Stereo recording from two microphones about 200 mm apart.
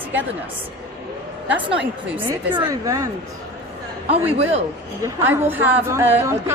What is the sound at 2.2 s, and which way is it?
Speech, 25° right (ahead or behind).